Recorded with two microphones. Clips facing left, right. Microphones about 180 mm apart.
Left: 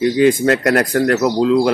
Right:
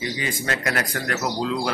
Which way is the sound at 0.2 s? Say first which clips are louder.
Left 17 dB; 65° left (ahead or behind).